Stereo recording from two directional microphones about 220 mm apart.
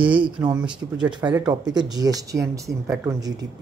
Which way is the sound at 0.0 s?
20° right (ahead or behind).